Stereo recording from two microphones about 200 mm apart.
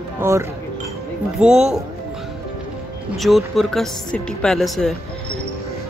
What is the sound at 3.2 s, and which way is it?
Speech, centre (ahead or behind).